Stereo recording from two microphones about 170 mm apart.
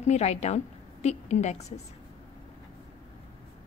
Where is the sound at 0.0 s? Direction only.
40° left (ahead or behind).